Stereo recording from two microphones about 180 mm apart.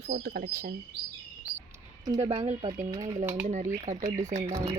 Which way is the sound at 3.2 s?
15° right (ahead or behind).